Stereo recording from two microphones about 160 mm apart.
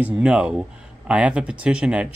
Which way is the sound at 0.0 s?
5° right (ahead or behind).